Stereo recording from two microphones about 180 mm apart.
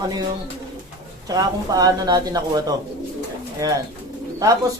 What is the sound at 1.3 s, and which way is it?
Speech, 20° right (ahead or behind).